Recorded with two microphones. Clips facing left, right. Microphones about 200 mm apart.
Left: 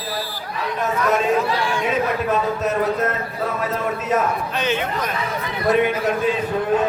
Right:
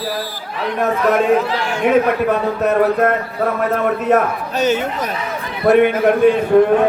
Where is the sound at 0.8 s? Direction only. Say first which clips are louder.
Right 5 dB; 60° right (ahead or behind).